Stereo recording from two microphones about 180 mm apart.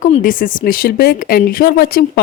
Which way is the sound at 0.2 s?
50° left (ahead or behind).